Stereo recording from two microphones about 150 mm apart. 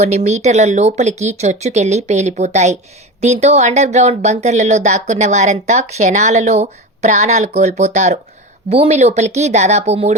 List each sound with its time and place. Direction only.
0.0 s speech: 50° right (ahead or behind)